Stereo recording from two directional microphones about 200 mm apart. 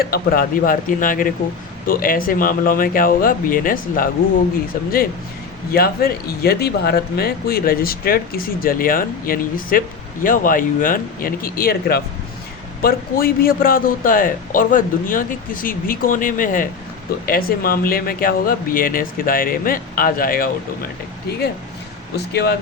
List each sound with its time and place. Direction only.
0.0 s speech: 50° left (ahead or behind)
5.7 s speech: 50° left (ahead or behind)
22.1 s speech: 55° left (ahead or behind)